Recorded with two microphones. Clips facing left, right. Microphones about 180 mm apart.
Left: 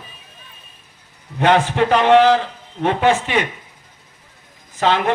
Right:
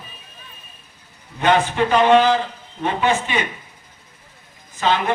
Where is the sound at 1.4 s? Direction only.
80° left.